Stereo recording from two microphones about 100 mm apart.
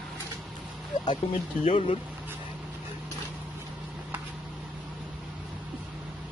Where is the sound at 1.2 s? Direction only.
80° left.